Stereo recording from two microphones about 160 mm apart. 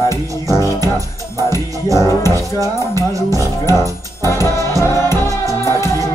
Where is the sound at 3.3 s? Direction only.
15° left (ahead or behind).